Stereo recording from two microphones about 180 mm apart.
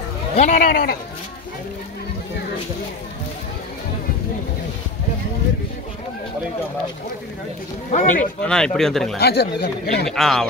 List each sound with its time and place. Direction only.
0.4 s speech: 45° left (ahead or behind)
7.9 s speech: 45° left (ahead or behind)
8.4 s speech: 5° left (ahead or behind)
9.2 s speech: 65° left (ahead or behind)
10.0 s speech: centre (ahead or behind)